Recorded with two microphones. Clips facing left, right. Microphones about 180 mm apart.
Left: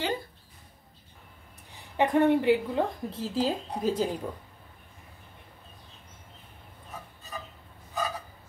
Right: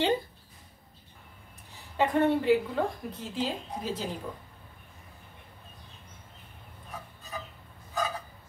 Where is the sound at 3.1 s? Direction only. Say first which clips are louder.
Left 4 dB; 35° left (ahead or behind).